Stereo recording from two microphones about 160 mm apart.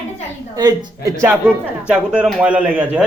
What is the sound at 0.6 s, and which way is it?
Speech, 25° right (ahead or behind).